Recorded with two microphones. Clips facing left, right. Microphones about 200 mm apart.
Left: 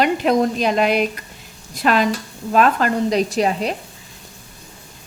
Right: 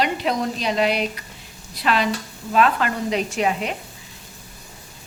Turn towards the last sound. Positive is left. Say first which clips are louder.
# left 3 dB
turn(degrees=35)  # may be behind; listen again after turning